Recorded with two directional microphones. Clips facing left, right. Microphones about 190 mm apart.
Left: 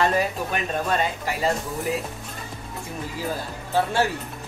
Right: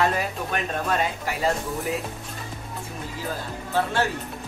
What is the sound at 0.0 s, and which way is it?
Speech, centre (ahead or behind).